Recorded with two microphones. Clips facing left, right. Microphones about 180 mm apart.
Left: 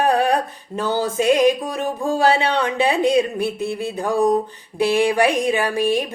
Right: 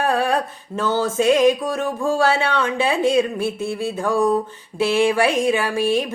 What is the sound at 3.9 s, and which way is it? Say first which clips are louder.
Mantra: left 1 dB; 35° left (ahead or behind).